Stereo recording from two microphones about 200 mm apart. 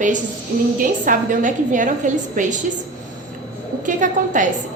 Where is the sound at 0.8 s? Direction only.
40° right (ahead or behind).